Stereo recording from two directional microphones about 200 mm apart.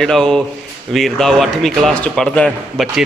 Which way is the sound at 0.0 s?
Centre (ahead or behind).